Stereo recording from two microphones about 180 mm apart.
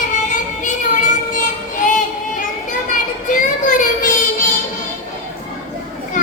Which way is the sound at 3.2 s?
45° left (ahead or behind).